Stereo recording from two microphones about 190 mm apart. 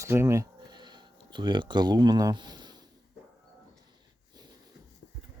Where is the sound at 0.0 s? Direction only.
15° right (ahead or behind).